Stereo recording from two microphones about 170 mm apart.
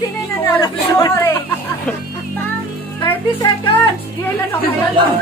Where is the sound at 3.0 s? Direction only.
30° left (ahead or behind).